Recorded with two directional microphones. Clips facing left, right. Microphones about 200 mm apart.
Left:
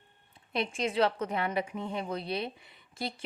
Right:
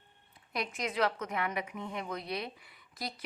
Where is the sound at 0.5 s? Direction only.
25° left (ahead or behind).